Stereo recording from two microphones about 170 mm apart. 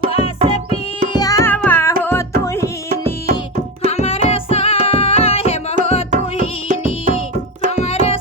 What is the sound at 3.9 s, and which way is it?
Music, 40° left (ahead or behind).